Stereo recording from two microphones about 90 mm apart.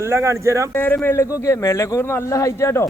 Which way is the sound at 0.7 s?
20° left (ahead or behind).